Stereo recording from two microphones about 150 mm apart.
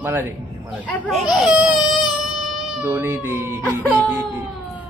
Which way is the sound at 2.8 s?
15° right (ahead or behind).